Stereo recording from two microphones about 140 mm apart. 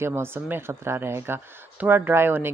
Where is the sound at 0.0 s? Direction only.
15° right (ahead or behind).